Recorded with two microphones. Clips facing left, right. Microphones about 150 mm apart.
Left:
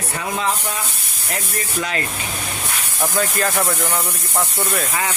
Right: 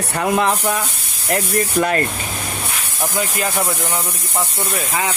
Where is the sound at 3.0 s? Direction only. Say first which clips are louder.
Left 1 dB; 15° right (ahead or behind).